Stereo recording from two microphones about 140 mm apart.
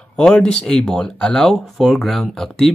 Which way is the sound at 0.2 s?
5° left (ahead or behind).